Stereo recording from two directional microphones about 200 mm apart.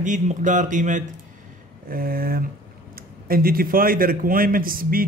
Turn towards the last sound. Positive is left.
turn(degrees=-45)  # may be behind; listen again after turning